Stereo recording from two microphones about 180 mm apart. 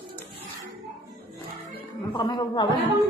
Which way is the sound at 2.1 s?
25° left (ahead or behind).